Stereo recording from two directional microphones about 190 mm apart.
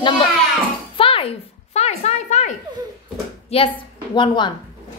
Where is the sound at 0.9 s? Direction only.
30° left (ahead or behind).